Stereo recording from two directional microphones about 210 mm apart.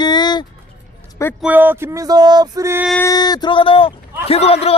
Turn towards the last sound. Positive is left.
turn(degrees=30)  # may be behind; listen again after turning